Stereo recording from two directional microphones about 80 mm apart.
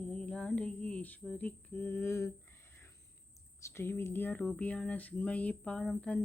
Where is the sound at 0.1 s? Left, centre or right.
Centre.